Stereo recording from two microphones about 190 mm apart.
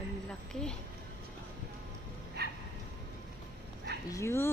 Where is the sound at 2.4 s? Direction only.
55° right (ahead or behind).